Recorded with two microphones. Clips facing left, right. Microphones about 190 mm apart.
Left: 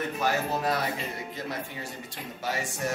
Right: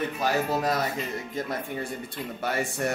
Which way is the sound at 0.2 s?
40° right (ahead or behind).